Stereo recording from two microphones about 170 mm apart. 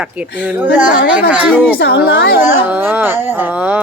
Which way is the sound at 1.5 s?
5° left (ahead or behind).